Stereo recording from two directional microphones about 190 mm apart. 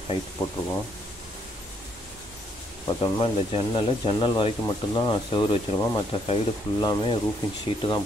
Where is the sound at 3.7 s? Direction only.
30° left (ahead or behind).